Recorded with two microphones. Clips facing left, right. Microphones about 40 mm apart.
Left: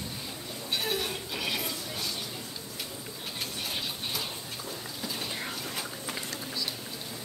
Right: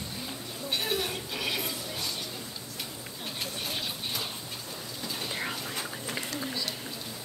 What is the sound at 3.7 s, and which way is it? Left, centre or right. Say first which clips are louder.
Tick-tock: even; centre.